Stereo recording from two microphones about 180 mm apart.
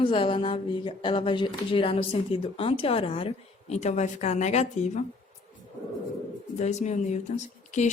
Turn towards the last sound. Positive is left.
turn(degrees=40)  # may be behind; listen again after turning